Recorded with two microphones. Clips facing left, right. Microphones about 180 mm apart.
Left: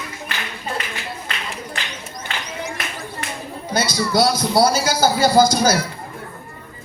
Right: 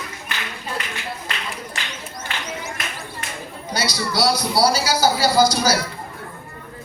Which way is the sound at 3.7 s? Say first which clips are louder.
Left 5 dB; 50° left (ahead or behind).